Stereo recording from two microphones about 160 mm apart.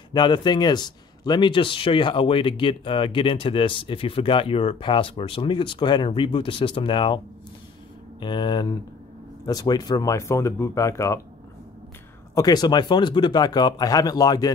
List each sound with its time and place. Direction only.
0.1 s a man's voice: 30° left (ahead or behind)
8.2 s speech: 30° left (ahead or behind)
12.4 s speech: 25° left (ahead or behind)